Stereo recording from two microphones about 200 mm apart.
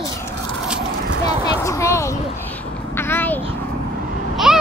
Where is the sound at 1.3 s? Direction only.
15° left (ahead or behind).